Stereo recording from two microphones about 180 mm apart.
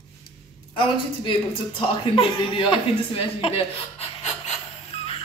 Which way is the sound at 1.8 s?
30° left (ahead or behind).